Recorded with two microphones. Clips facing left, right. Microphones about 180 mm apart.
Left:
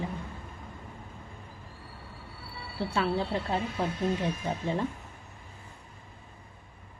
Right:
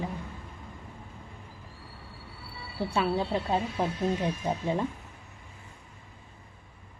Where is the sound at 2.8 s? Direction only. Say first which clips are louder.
Right 1 dB; 15° right (ahead or behind).